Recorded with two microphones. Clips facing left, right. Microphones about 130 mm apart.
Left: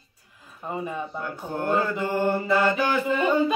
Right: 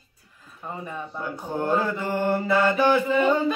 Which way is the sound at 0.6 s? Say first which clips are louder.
Left 3 dB; 10° left (ahead or behind).